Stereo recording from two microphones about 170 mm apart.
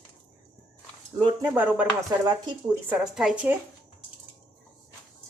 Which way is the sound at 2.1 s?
20° right (ahead or behind).